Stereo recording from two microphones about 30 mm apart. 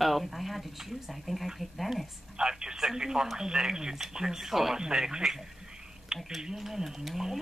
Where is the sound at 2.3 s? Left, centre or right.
Right.